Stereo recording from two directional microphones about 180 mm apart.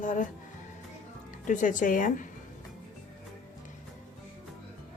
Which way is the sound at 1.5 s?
45° left (ahead or behind).